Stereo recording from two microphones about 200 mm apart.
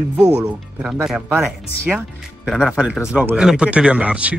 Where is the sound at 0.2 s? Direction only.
5° right (ahead or behind).